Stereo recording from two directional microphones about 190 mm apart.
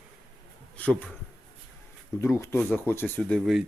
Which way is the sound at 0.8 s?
5° left (ahead or behind).